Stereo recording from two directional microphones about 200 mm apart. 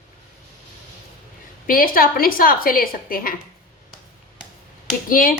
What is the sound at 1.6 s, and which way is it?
A woman's voice, 45° left (ahead or behind).